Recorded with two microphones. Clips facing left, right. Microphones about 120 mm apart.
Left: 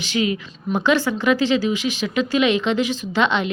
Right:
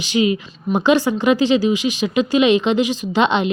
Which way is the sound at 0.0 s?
15° right (ahead or behind).